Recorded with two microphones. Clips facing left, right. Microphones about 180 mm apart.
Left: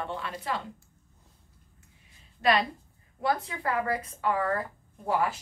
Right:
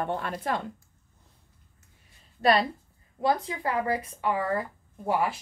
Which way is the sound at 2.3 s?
35° right (ahead or behind).